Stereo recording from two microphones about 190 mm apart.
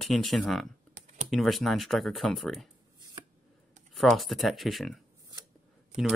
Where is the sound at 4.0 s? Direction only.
Centre (ahead or behind).